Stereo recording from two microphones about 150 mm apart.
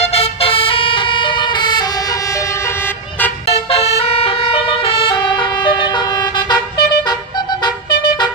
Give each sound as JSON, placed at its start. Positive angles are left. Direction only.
{"t": 0.0, "sound": "vehicle", "side_deg": 40}
{"t": 3.4, "sound": "vehicle", "side_deg": 40}